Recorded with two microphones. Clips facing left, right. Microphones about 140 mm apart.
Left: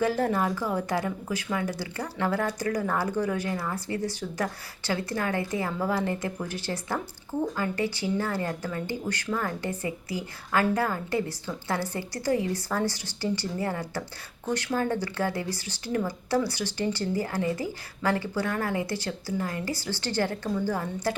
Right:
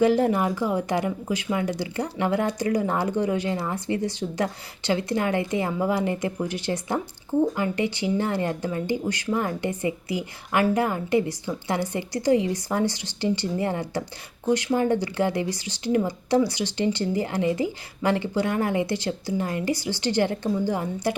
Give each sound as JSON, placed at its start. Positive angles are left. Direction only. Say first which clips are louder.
{"t": 0.0, "sound": "a woman's voice", "louder": "right 5 dB", "side_deg": -15}